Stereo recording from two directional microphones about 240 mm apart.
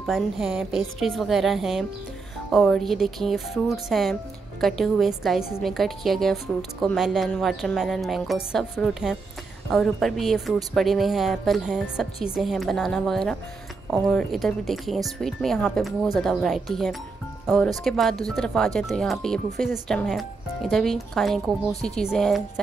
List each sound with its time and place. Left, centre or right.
0.0 s speech: centre